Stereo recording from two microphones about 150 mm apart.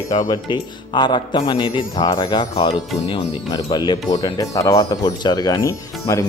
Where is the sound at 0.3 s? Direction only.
30° left (ahead or behind).